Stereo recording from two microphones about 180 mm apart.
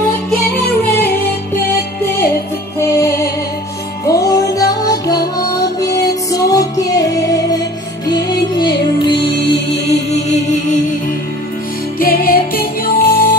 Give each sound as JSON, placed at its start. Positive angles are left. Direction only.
{"t": 2.8, "sound": "music", "side_deg": 15}
{"t": 12.0, "sound": "music", "side_deg": 55}